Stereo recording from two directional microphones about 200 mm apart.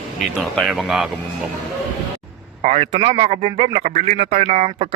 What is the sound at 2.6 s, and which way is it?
Speech, 30° right (ahead or behind).